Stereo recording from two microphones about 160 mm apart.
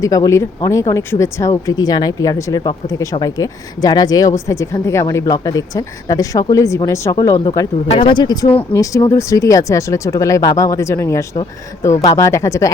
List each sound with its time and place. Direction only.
0.0 s speech: 20° left (ahead or behind)